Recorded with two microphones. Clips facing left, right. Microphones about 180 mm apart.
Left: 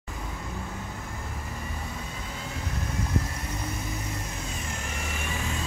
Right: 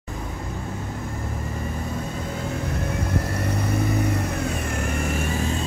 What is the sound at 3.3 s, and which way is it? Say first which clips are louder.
Vehicle: right 10 dB; 65° right (ahead or behind).